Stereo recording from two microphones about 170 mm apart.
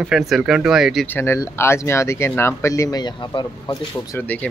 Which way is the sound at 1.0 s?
15° left (ahead or behind).